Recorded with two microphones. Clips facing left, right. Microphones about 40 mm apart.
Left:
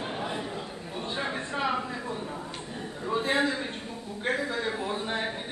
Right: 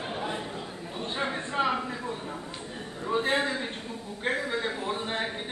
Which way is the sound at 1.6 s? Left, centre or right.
Right.